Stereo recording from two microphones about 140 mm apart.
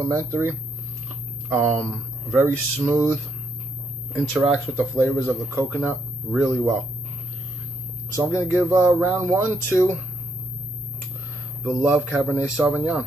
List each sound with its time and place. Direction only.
0.0 s a man's voice: 20° right (ahead or behind)
4.1 s speech: 5° right (ahead or behind)
8.3 s a man's voice: 15° right (ahead or behind)
11.6 s a man's voice: 5° right (ahead or behind)